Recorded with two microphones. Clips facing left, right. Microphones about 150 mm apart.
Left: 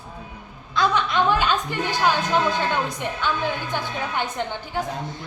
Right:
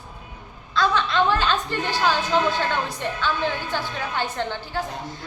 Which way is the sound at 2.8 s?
15° left (ahead or behind).